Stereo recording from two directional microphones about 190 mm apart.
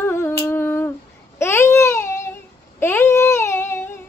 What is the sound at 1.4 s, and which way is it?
Baby cry, 15° left (ahead or behind).